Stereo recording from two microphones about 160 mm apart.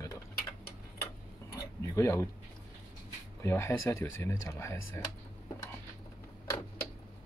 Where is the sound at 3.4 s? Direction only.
15° left (ahead or behind).